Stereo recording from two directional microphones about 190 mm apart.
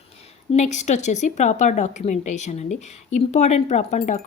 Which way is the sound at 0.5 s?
40° left (ahead or behind).